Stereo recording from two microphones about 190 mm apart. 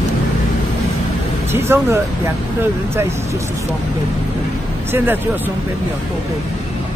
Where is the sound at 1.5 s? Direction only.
10° right (ahead or behind).